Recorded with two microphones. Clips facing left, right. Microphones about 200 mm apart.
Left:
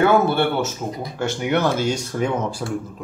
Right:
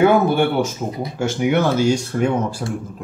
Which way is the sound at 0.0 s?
15° right (ahead or behind).